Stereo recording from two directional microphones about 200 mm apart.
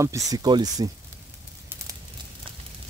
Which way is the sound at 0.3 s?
20° right (ahead or behind).